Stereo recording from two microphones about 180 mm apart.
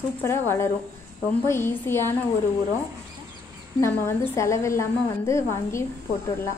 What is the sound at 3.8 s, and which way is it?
A woman's voice, 15° left (ahead or behind).